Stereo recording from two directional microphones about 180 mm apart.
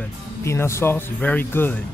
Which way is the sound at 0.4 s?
15° left (ahead or behind).